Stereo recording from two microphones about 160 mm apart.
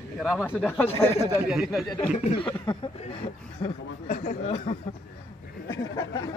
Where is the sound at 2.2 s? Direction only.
45° left (ahead or behind).